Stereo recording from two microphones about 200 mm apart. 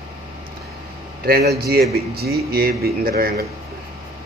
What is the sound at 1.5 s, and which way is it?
Speech, 50° right (ahead or behind).